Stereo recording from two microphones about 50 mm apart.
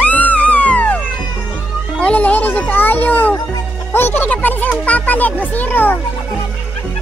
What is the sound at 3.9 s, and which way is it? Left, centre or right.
Speech, left.